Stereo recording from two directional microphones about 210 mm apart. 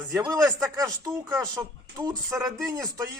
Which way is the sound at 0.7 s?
15° right (ahead or behind).